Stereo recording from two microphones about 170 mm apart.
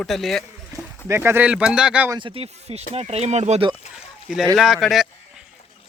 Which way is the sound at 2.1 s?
30° right (ahead or behind).